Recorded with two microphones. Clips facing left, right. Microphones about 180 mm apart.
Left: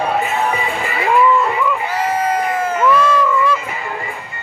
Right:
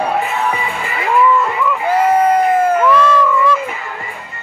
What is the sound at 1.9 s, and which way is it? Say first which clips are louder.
Crowd: right 6 dB; 55° right (ahead or behind).